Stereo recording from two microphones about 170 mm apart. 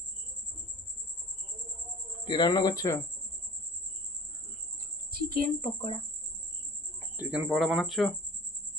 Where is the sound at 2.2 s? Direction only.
25° left (ahead or behind).